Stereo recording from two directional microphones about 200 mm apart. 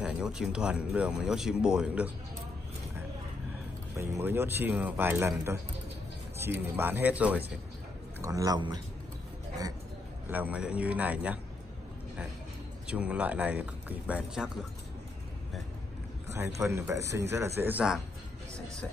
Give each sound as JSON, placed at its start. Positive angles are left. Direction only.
{"t": 0.0, "sound": "speech", "side_deg": -5}
{"t": 3.9, "sound": "speech", "side_deg": -15}
{"t": 6.3, "sound": "speech", "side_deg": -10}
{"t": 10.3, "sound": "speech", "side_deg": -10}
{"t": 12.8, "sound": "speech", "side_deg": -5}
{"t": 16.3, "sound": "speech", "side_deg": -15}